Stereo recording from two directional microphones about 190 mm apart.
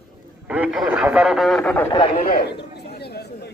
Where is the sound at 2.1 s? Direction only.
50° left (ahead or behind).